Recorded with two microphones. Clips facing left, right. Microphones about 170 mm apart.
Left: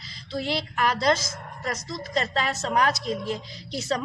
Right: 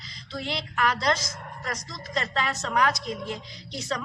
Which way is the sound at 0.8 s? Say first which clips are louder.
Left 1 dB; 35° left (ahead or behind).